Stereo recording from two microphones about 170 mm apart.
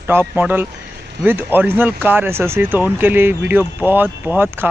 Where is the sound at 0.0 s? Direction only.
10° right (ahead or behind).